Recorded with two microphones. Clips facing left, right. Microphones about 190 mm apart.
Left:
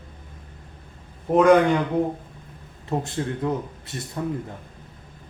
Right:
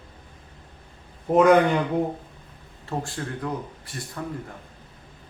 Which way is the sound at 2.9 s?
20° left (ahead or behind).